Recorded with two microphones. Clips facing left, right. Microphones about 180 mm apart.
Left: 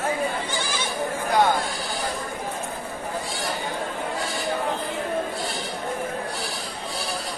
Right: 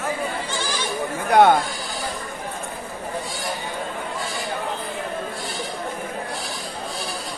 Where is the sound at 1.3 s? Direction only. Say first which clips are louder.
Right 6 dB; 60° right (ahead or behind).